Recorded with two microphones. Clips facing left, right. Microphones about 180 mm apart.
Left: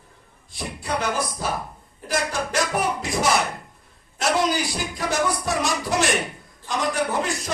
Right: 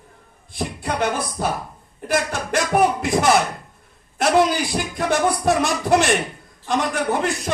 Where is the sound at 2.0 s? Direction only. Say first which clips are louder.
Right 3 dB; 60° right (ahead or behind).